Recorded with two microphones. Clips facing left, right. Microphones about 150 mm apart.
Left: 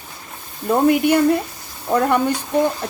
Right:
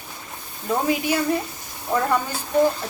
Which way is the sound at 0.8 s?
60° left (ahead or behind).